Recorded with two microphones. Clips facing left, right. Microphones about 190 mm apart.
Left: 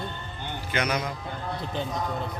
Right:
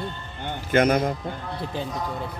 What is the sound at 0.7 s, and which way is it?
Speech, 50° right (ahead or behind).